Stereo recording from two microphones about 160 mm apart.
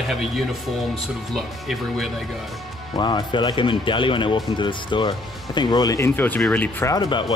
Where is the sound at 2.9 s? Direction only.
30° left (ahead or behind); by 6.9 s 10° left (ahead or behind).